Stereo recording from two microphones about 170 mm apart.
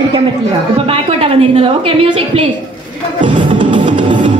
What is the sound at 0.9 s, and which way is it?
A woman's voice, 35° right (ahead or behind).